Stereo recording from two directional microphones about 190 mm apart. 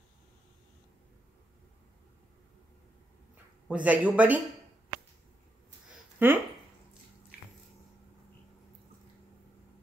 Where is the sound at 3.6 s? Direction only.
5° right (ahead or behind).